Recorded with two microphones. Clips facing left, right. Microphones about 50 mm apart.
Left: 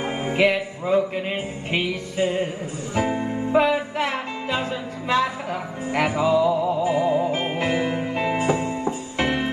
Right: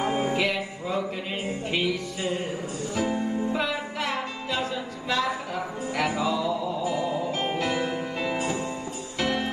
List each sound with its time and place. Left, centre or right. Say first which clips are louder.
0.0 s music: left 4 dB; left